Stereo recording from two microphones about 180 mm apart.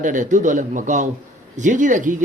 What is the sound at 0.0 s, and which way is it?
Speech, 45° right (ahead or behind).